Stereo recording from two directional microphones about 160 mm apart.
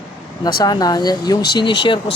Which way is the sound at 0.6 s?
25° left (ahead or behind).